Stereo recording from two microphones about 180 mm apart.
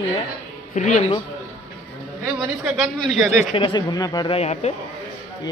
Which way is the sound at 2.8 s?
Centre (ahead or behind).